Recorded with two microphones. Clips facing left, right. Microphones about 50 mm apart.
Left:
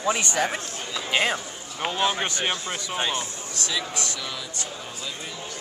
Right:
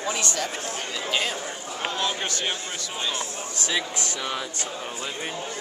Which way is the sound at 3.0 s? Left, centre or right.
Left.